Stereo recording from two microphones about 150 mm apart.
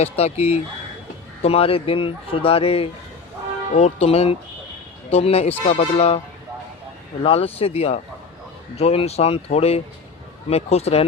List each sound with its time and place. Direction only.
0.0 s speech: 45° left (ahead or behind)
7.2 s speech: 40° left (ahead or behind)